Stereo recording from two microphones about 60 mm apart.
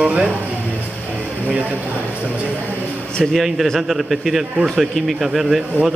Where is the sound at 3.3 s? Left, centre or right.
Centre.